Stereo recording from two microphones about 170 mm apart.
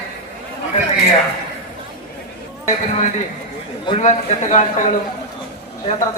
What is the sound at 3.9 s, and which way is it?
Speech, 45° left (ahead or behind).